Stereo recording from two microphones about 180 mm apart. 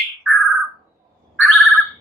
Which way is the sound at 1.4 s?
Centre (ahead or behind).